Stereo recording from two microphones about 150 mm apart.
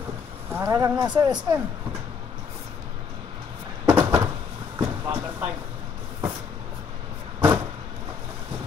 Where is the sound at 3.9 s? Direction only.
15° right (ahead or behind).